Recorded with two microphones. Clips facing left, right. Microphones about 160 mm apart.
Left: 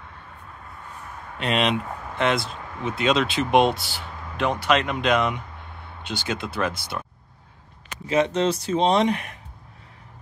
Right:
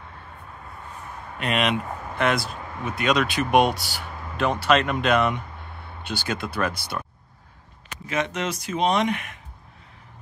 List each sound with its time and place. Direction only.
1.4 s speech: 30° left (ahead or behind)
8.1 s speech: 30° left (ahead or behind)